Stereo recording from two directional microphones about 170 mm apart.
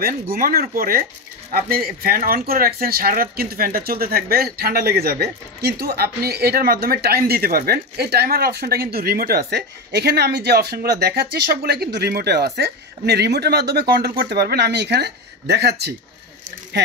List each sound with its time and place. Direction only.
0.0 s speech: 60° right (ahead or behind)